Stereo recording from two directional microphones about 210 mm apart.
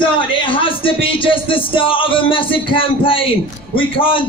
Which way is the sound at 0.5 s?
25° left (ahead or behind).